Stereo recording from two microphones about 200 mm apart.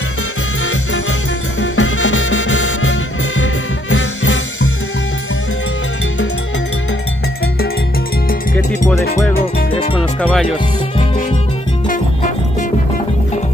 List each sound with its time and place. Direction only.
1.6 s music: 70° left (ahead or behind)
9.9 s music: 5° left (ahead or behind)